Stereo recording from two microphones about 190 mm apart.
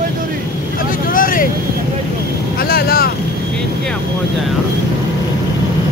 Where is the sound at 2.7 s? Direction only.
50° left (ahead or behind).